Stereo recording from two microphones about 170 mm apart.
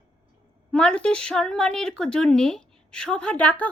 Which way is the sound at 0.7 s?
5° left (ahead or behind).